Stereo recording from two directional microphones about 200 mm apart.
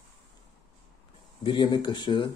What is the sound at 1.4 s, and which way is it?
Speech, 25° left (ahead or behind).